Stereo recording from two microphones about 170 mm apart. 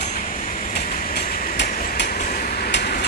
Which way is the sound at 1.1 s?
65° left (ahead or behind).